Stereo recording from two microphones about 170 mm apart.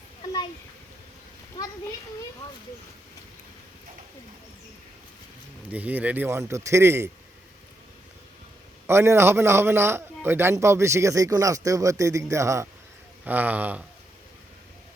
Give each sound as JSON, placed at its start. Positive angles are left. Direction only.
{"t": 5.6, "sound": "a man's voice", "side_deg": -10}
{"t": 8.9, "sound": "a man's voice", "side_deg": -15}